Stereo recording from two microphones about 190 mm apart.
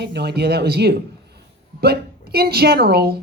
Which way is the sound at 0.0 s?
60° right (ahead or behind).